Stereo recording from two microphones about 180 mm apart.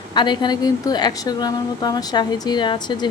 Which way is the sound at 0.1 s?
25° left (ahead or behind).